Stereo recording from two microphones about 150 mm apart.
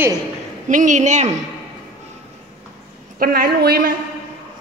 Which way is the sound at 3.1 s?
80° right.